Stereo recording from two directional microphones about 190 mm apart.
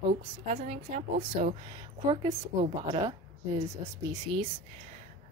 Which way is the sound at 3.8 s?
15° right (ahead or behind).